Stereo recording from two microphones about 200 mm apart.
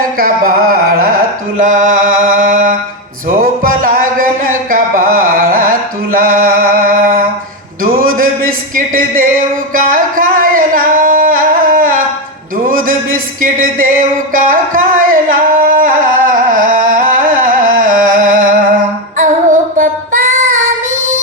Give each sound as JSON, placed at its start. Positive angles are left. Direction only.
{"t": 0.2, "sound": "music", "side_deg": -45}
{"t": 7.9, "sound": "a sound", "side_deg": -45}
{"t": 9.7, "sound": "singing", "side_deg": -45}
{"t": 13.4, "sound": "a sound", "side_deg": -45}
{"t": 14.3, "sound": "singing", "side_deg": -45}
{"t": 19.1, "sound": "female singing", "side_deg": -40}